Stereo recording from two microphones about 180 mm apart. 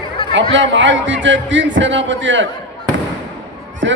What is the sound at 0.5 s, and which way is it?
A man's voice, 90° right.